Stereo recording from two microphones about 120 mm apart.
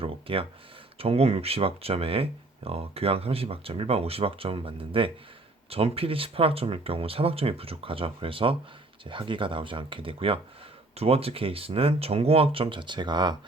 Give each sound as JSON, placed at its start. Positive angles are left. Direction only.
{"t": 0.0, "sound": "speech", "side_deg": -50}